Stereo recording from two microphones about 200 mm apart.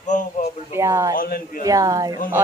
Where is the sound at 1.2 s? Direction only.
45° left (ahead or behind).